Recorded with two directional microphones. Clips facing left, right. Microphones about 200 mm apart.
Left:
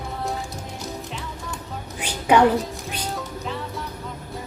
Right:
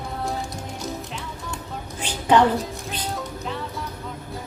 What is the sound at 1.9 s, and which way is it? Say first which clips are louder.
Music: even; 10° left (ahead or behind).